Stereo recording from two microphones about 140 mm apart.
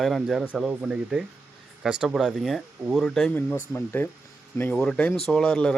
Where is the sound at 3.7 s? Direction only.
15° left (ahead or behind).